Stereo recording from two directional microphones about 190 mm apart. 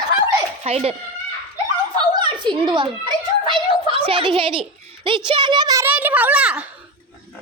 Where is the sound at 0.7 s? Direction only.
30° right (ahead or behind).